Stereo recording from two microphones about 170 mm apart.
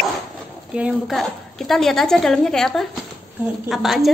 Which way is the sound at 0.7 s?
5° right (ahead or behind).